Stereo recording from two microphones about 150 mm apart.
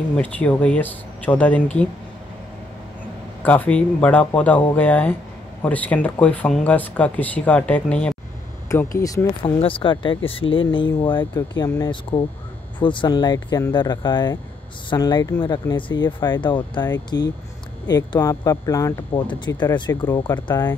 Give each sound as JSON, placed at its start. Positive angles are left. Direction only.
{"t": 0.1, "sound": "speech", "side_deg": 10}
{"t": 3.4, "sound": "speech", "side_deg": 10}
{"t": 8.6, "sound": "speech", "side_deg": 20}
{"t": 9.4, "sound": "speech", "side_deg": 35}